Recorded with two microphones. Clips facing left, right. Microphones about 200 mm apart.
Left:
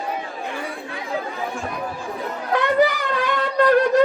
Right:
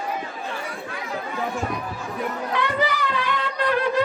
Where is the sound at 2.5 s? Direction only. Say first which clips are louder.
Left 8 dB; 45° left (ahead or behind).